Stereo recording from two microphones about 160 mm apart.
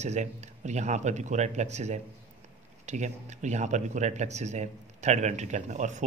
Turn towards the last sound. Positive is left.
turn(degrees=-50)  # may be behind; listen again after turning